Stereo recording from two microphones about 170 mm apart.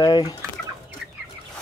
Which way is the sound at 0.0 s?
20° left (ahead or behind).